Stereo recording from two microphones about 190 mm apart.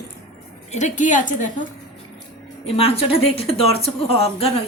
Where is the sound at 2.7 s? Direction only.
30° left (ahead or behind).